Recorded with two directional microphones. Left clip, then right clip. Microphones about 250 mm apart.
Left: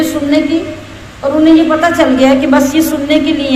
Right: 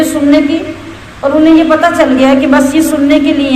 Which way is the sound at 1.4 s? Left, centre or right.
Centre.